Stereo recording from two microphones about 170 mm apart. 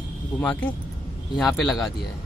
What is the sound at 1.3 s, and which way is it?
Speech, centre (ahead or behind).